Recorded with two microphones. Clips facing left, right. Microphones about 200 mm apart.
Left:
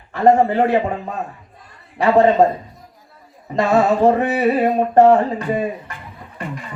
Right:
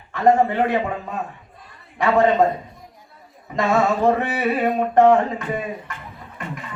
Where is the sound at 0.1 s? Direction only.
35° left (ahead or behind).